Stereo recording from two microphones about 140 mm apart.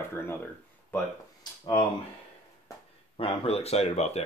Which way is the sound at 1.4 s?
35° left (ahead or behind).